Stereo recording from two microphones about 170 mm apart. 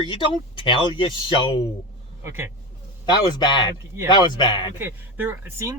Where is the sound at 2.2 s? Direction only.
15° right (ahead or behind).